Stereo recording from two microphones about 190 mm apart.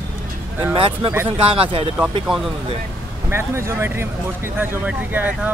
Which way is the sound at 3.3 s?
15° right (ahead or behind).